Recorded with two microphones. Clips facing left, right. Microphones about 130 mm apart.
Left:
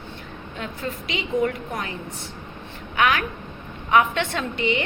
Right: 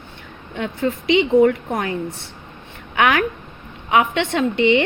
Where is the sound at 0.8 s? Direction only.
25° right (ahead or behind).